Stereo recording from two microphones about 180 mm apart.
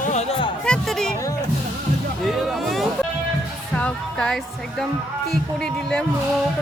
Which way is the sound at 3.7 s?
5° left (ahead or behind).